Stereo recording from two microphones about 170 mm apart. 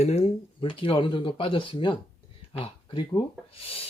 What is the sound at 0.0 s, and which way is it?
Speech, 40° left (ahead or behind).